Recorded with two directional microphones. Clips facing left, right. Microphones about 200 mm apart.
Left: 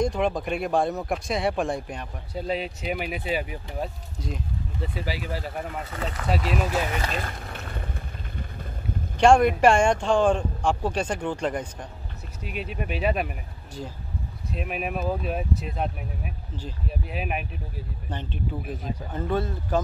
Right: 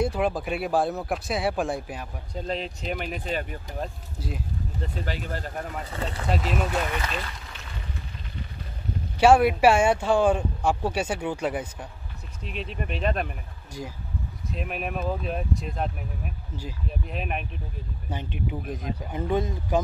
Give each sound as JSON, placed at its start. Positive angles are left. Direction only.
{"t": 0.0, "sound": "speech", "side_deg": -5}
{"t": 2.3, "sound": "speech", "side_deg": 5}
{"t": 4.2, "sound": "speech", "side_deg": -5}
{"t": 4.8, "sound": "speech", "side_deg": 5}
{"t": 7.0, "sound": "a sound", "side_deg": 45}
{"t": 9.2, "sound": "speech", "side_deg": -5}
{"t": 12.4, "sound": "speech", "side_deg": 5}
{"t": 13.8, "sound": "speech", "side_deg": -15}
{"t": 14.5, "sound": "speech", "side_deg": 0}
{"t": 17.1, "sound": "speech", "side_deg": 5}
{"t": 18.1, "sound": "speech", "side_deg": -15}